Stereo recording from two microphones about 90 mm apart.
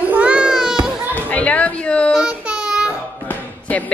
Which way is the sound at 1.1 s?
15° left (ahead or behind).